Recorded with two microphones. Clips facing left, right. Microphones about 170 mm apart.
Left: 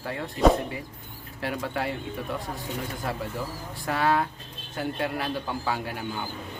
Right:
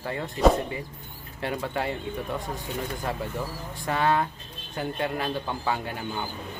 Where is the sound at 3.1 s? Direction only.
5° left (ahead or behind).